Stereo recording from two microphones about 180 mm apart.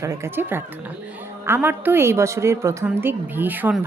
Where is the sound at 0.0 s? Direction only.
15° right (ahead or behind).